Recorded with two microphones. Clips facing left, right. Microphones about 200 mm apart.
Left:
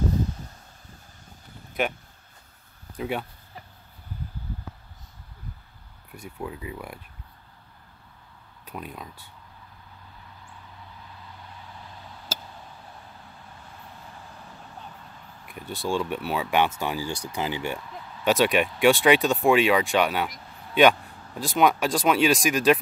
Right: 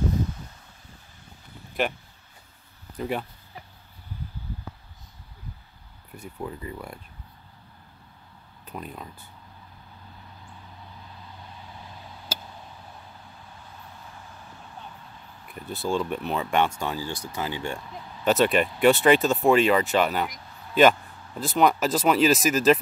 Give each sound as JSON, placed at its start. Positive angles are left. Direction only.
{"t": 3.0, "sound": "speech", "side_deg": 0}
{"t": 6.1, "sound": "speech", "side_deg": 0}
{"t": 8.6, "sound": "speech", "side_deg": 5}
{"t": 15.4, "sound": "speech", "side_deg": 0}